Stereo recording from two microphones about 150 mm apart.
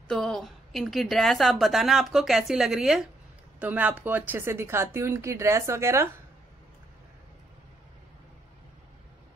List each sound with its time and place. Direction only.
0.1 s a woman's voice: 5° left (ahead or behind); by 6.1 s 20° right (ahead or behind)